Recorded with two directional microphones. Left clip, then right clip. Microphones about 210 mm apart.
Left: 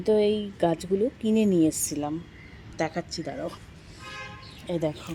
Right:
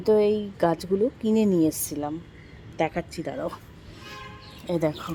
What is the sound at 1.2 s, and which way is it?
Speech, 5° right (ahead or behind).